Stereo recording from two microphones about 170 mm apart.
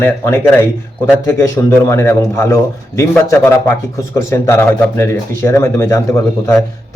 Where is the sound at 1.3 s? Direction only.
15° left (ahead or behind).